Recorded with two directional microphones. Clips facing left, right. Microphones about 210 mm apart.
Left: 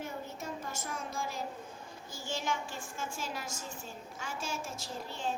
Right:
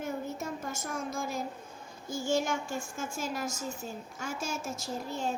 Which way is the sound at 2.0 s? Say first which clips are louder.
Right 7 dB; 45° right (ahead or behind).